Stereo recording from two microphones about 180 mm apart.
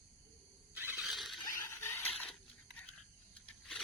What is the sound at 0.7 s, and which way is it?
Squeal, 10° right (ahead or behind).